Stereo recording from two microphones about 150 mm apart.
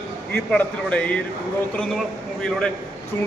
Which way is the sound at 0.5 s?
5° left (ahead or behind).